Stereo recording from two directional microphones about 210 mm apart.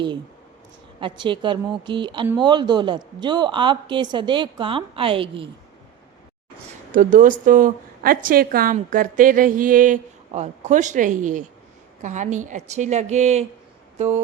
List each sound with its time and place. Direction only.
0.9 s a woman's voice: 25° right (ahead or behind)
6.9 s a woman's voice: 40° right (ahead or behind)